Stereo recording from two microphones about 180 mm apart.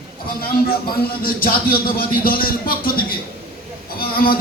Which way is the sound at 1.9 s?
55° left (ahead or behind).